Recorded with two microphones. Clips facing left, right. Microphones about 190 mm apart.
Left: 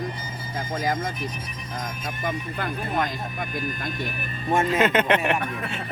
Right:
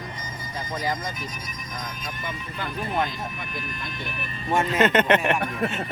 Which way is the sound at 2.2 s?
50° left (ahead or behind).